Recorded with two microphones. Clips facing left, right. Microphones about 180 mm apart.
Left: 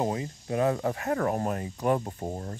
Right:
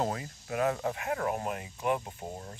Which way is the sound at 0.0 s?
20° left (ahead or behind).